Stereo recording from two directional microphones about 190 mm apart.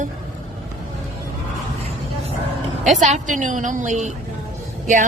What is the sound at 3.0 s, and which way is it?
A woman's voice, 40° right (ahead or behind).